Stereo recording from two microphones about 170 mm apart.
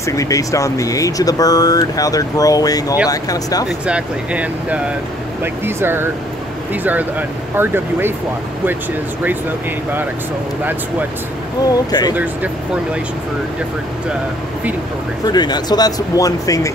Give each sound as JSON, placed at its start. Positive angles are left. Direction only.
{"t": 0.0, "sound": "speech", "side_deg": 20}
{"t": 3.8, "sound": "speech", "side_deg": -5}
{"t": 10.6, "sound": "speech", "side_deg": -10}
{"t": 11.7, "sound": "speech", "side_deg": 25}
{"t": 15.2, "sound": "speech", "side_deg": 25}